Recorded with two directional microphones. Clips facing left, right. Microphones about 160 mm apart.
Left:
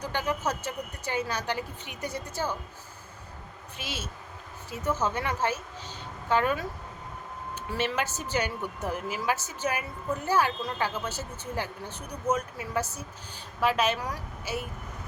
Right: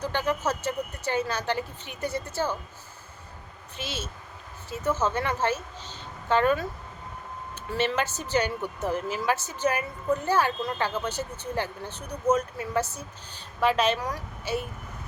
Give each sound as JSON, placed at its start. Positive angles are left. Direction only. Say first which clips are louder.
{"t": 0.0, "sound": "speech", "louder": "right 3 dB", "side_deg": 10}
{"t": 3.8, "sound": "speech", "louder": "right 3 dB", "side_deg": 10}